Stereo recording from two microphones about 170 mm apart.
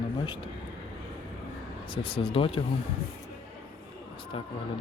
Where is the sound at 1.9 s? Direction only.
30° left (ahead or behind).